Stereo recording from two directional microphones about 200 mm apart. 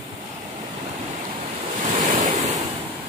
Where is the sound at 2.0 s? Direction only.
35° right (ahead or behind).